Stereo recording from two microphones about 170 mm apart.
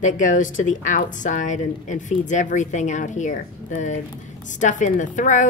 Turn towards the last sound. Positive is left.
turn(degrees=45)  # may be behind; listen again after turning